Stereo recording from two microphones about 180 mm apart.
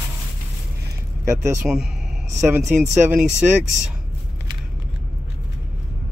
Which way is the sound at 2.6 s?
Centre (ahead or behind).